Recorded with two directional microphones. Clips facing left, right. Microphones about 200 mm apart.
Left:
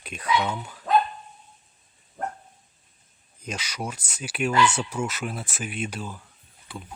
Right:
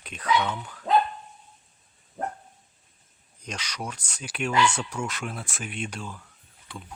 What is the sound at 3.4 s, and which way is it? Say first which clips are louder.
Speech: left 3 dB; 5° left (ahead or behind).